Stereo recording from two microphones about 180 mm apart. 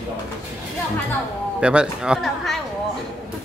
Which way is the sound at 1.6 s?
5° right (ahead or behind).